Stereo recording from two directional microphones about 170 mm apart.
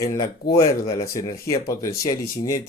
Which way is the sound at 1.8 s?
20° left (ahead or behind).